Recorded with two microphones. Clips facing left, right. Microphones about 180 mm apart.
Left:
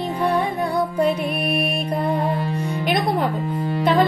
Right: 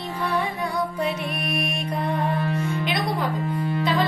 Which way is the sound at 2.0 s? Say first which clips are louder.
Left 1 dB; 35° left (ahead or behind).